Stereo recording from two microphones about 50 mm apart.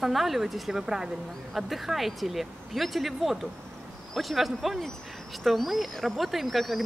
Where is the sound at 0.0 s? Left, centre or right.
Centre.